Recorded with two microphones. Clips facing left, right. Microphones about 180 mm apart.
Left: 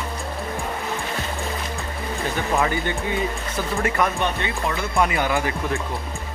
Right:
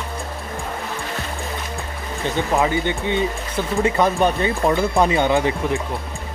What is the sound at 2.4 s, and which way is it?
Speech, 20° right (ahead or behind).